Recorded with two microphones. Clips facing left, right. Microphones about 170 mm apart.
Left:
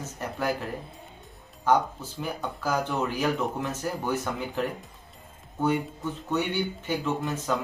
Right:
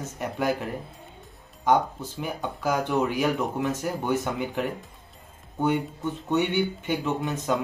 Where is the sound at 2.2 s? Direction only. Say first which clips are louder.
Right 2 dB; 15° right (ahead or behind).